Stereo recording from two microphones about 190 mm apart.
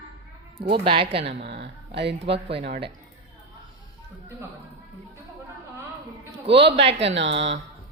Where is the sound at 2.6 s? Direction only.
60° right (ahead or behind).